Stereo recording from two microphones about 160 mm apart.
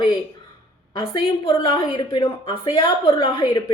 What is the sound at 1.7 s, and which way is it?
A woman's voice, 30° left (ahead or behind).